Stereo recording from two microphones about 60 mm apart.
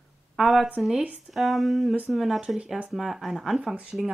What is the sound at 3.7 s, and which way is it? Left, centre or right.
Speech, centre.